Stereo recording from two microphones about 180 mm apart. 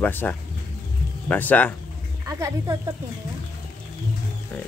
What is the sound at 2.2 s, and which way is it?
Child singing, 20° right (ahead or behind).